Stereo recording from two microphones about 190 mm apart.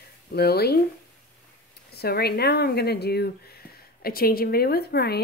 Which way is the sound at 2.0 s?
55° left (ahead or behind).